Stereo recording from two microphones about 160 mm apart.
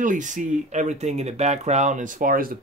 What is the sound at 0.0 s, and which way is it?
Speech, 55° right (ahead or behind).